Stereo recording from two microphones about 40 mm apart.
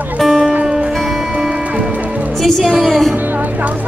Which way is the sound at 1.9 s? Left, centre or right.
Right.